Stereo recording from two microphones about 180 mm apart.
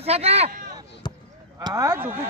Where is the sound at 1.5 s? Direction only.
20° right (ahead or behind).